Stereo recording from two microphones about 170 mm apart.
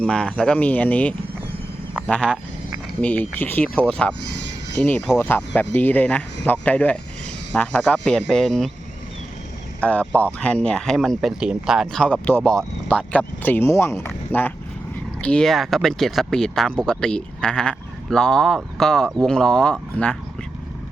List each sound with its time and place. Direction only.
0.0 s speech: 5° left (ahead or behind)
4.2 s speech: 80° left
4.8 s speech: 5° left (ahead or behind)
9.8 s speech: 10° left (ahead or behind)
14.1 s a sound: 10° left (ahead or behind)
15.2 s speech: 5° left (ahead or behind)